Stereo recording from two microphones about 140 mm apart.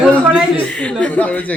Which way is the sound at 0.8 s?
10° left (ahead or behind).